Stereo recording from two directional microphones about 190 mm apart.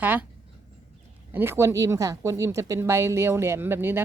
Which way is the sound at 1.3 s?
10° right (ahead or behind).